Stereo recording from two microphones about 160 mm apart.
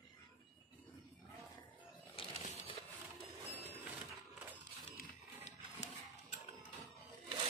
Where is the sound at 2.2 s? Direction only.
35° left (ahead or behind).